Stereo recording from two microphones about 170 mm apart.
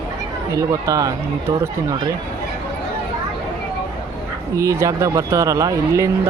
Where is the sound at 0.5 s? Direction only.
20° right (ahead or behind).